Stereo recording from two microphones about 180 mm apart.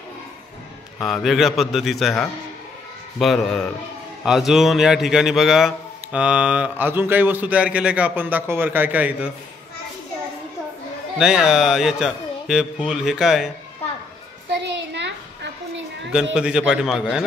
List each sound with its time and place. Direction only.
1.0 s a man's voice: centre (ahead or behind)
11.1 s a man's voice: 5° right (ahead or behind)
14.5 s a sound: 80° right
16.3 s a man's voice: 5° right (ahead or behind)